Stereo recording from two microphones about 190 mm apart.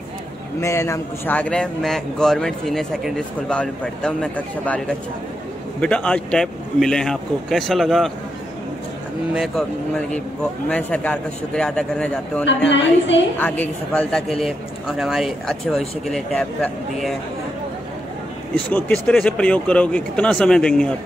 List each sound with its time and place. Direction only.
0.6 s a man's voice: 15° left (ahead or behind)
9.3 s a man's voice: centre (ahead or behind)
12.6 s a woman's voice: 70° left (ahead or behind)
13.4 s speech: 10° left (ahead or behind)
14.4 s a man's voice: 5° right (ahead or behind)
18.7 s speech: 10° left (ahead or behind)